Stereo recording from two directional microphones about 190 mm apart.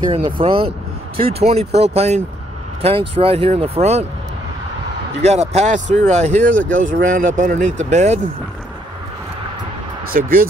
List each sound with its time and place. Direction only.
0.4 s speech: 30° right (ahead or behind)
5.2 s speech: 35° right (ahead or behind)
6.6 s speech: 90° right
6.9 s speech: 45° right (ahead or behind)
10.1 s speech: 45° right (ahead or behind)